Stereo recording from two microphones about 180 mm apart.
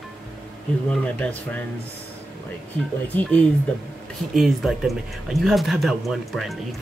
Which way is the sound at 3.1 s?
10° left (ahead or behind).